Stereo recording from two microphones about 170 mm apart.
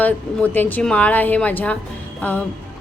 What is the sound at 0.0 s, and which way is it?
A woman's voice, 10° left (ahead or behind).